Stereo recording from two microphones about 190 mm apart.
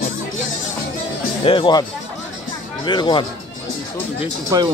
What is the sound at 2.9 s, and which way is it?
Speech, 25° left (ahead or behind).